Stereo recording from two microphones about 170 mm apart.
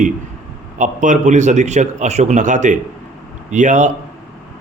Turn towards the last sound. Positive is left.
turn(degrees=-45)  # may be behind; listen again after turning